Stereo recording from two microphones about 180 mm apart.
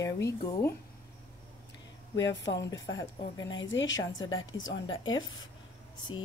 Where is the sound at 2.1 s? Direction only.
90° left.